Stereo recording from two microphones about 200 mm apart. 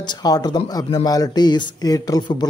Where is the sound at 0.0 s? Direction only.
20° left (ahead or behind).